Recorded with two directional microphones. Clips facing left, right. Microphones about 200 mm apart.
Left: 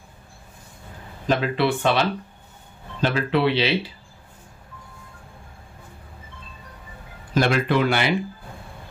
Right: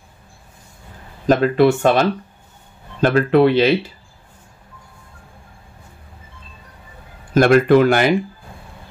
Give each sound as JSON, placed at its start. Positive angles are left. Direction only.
{"t": 1.2, "sound": "speech", "side_deg": -45}
{"t": 7.3, "sound": "speech", "side_deg": -50}